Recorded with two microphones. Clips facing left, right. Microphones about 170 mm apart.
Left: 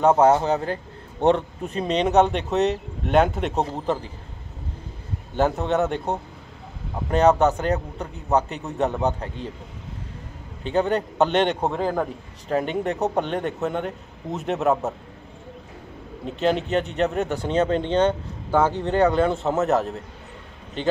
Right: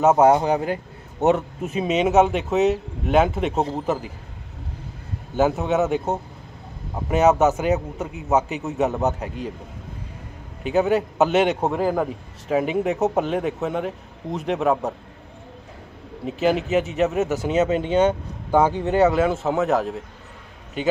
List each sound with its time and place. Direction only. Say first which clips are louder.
0.0 s a man's voice: right 1 dB; 10° right (ahead or behind)
5.3 s a man's voice: right 2 dB; 5° right (ahead or behind)
10.6 s a man's voice: right 2 dB; 5° right (ahead or behind)
16.3 s a man's voice: right 2 dB; 5° right (ahead or behind)